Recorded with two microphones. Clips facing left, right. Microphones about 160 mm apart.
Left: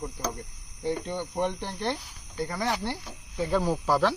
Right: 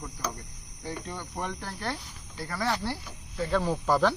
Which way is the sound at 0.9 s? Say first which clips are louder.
Left 7 dB; 20° left (ahead or behind).